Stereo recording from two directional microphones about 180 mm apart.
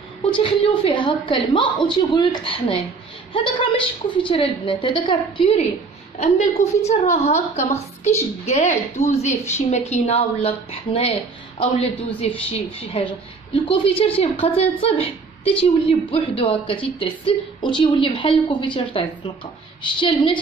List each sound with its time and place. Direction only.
0.3 s a woman's voice: 30° left (ahead or behind)
4.2 s a woman's voice: 30° left (ahead or behind)
9.3 s a woman's voice: 15° left (ahead or behind)
9.7 s a woman's voice: 35° left (ahead or behind)